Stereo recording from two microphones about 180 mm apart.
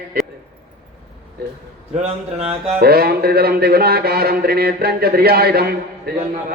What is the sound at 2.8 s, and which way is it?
A man's voice, 55° right (ahead or behind).